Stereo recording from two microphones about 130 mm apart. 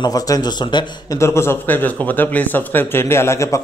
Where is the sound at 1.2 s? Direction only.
20° left (ahead or behind).